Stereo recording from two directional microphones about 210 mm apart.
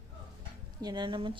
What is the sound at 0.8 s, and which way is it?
Speech, 20° right (ahead or behind).